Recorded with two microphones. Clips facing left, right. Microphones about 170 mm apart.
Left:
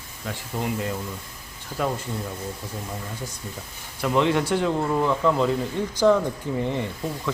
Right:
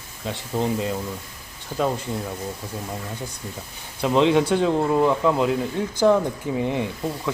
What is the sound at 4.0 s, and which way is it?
Speech, 20° right (ahead or behind).